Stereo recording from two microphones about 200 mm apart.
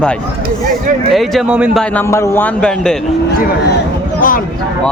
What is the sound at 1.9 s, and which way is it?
A man's voice, 15° left (ahead or behind).